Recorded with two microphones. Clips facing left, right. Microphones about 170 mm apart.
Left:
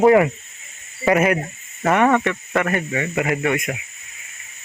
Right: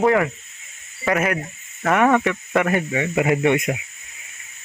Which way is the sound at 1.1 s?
10° left (ahead or behind).